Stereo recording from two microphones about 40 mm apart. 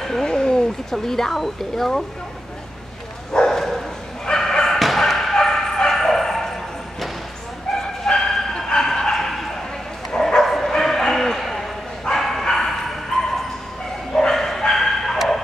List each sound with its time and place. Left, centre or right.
0.0 s speech: centre
3.3 s dog: centre
4.3 s bow-wow: centre
9.1 s a sound: centre
10.1 s bow-wow: centre
10.4 s bow-wow: centre